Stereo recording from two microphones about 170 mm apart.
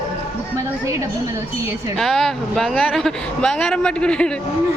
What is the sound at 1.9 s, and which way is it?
Speech, centre (ahead or behind).